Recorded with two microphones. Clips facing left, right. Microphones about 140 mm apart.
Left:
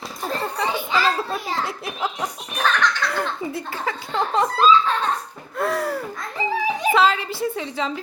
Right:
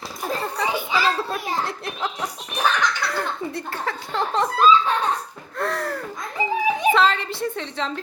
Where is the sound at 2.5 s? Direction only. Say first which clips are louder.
Left 1 dB; 10° right (ahead or behind).